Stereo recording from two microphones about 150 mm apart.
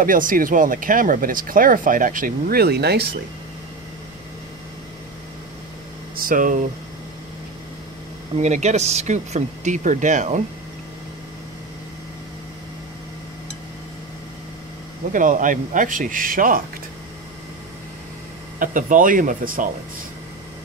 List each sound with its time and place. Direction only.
0.0 s speech: 65° right (ahead or behind); by 3.1 s 90° right
6.1 s speech: 65° right (ahead or behind)
8.4 s speech: 50° right (ahead or behind)
15.1 s speech: 60° right (ahead or behind)
18.6 s speech: 60° right (ahead or behind)